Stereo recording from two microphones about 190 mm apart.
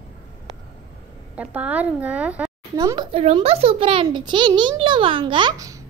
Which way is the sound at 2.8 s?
20° right (ahead or behind).